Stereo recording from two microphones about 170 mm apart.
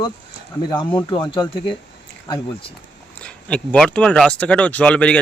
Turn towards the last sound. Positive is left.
turn(degrees=5)  # may be behind; listen again after turning